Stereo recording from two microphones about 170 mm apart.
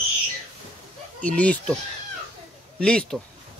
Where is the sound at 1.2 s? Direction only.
10° left (ahead or behind).